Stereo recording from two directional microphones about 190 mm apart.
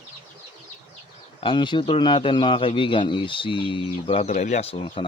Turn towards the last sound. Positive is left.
turn(degrees=30)  # may be behind; listen again after turning